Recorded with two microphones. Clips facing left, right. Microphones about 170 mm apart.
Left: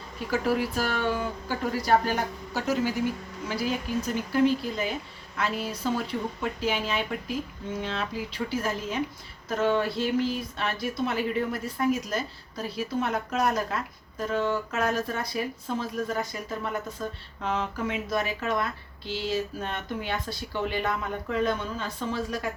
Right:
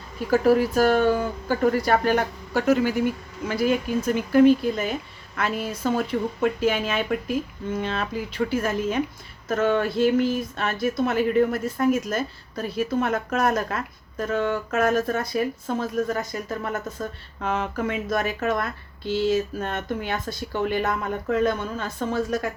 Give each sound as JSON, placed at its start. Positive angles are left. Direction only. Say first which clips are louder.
{"t": 0.3, "sound": "a woman's voice", "louder": "right 8 dB", "side_deg": -45}